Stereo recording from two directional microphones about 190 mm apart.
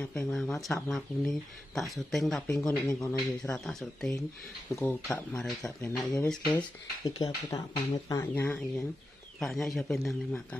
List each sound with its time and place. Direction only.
0.0 s speech: 5° left (ahead or behind)
7.2 s speech: 20° left (ahead or behind); by 10.4 s centre (ahead or behind)